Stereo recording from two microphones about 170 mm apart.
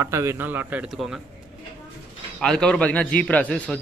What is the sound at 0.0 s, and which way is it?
Speech, 15° right (ahead or behind).